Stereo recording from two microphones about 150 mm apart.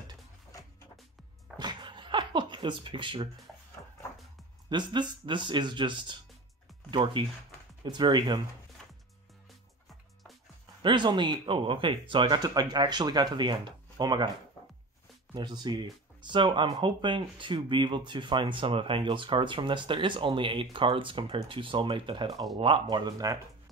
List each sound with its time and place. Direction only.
1.6 s a sound: 30° right (ahead or behind)
4.6 s speech: 30° right (ahead or behind)
10.8 s speech: 30° right (ahead or behind)
15.3 s speech: 30° right (ahead or behind)